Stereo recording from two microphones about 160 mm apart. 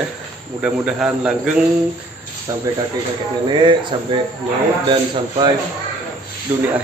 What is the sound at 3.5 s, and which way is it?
Speech, 30° right (ahead or behind).